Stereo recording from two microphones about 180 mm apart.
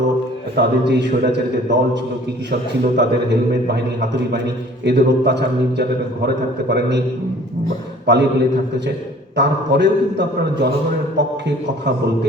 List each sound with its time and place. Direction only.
0.5 s a man's voice: 70° right (ahead or behind)
8.0 s a man's voice: 70° right (ahead or behind)
9.3 s a man's voice: 70° right (ahead or behind)